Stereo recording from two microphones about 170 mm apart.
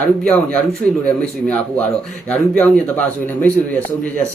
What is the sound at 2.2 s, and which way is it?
A man's voice, 5° left (ahead or behind).